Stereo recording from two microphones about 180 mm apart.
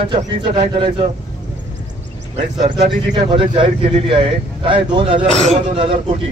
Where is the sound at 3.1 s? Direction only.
30° right (ahead or behind).